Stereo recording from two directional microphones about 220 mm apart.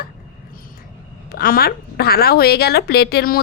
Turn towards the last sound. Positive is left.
turn(degrees=45)  # may be behind; listen again after turning